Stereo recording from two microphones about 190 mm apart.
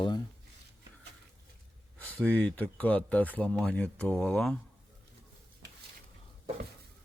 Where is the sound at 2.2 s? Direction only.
5° left (ahead or behind).